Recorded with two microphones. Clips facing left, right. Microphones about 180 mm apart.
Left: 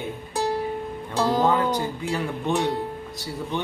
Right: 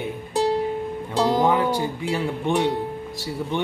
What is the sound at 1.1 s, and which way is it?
Speech, 15° right (ahead or behind).